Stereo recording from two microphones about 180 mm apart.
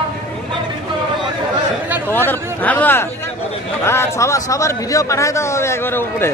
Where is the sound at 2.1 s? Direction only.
10° left (ahead or behind).